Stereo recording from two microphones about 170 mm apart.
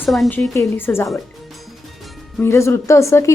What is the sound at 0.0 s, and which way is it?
Speech, centre (ahead or behind).